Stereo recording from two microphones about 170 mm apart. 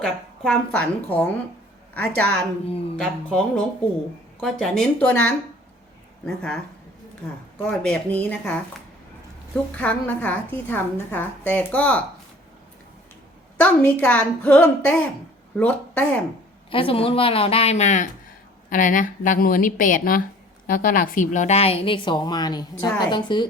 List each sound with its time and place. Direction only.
0.0 s a woman's voice: 5° left (ahead or behind)
7.6 s a woman's voice: 5° left (ahead or behind)
9.7 s a woman's voice: 10° left (ahead or behind)
13.6 s a woman's voice: 10° left (ahead or behind)
16.6 s a woman's voice: 30° left (ahead or behind)